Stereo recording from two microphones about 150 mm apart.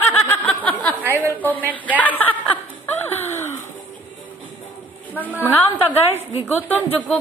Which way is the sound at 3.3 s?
15° left (ahead or behind).